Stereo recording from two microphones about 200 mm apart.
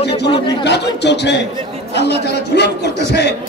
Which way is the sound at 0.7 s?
60° left (ahead or behind).